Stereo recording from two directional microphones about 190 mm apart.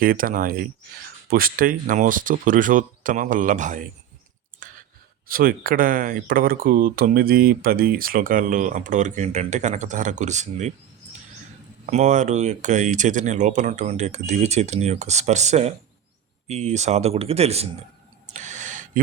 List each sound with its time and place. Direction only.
0.0 s speech: 50° right (ahead or behind)
5.3 s speech: 50° right (ahead or behind)
11.9 s speech: 40° right (ahead or behind)
18.3 s gasp: 40° right (ahead or behind)